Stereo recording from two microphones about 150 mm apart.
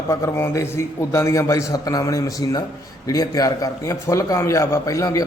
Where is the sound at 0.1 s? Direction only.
20° left (ahead or behind).